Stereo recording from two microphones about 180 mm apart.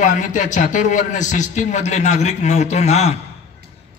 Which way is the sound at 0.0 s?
45° left (ahead or behind).